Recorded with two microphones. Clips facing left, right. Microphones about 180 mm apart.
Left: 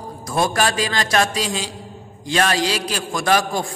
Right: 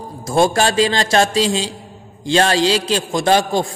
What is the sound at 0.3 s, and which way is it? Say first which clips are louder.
A man's voice: right 5 dB; 25° right (ahead or behind).